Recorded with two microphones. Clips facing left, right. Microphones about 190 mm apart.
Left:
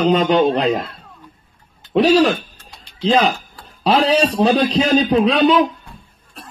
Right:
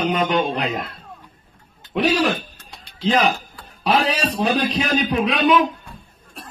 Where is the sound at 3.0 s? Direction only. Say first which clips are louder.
Left 3 dB; 35° left (ahead or behind).